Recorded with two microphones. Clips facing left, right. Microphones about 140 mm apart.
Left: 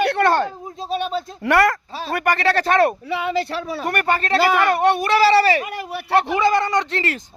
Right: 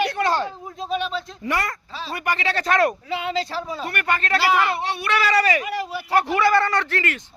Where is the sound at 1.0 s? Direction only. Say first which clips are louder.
Left 4 dB; 45° left (ahead or behind).